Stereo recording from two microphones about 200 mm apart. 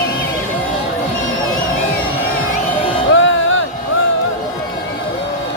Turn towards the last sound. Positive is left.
turn(degrees=75)  # may be behind; listen again after turning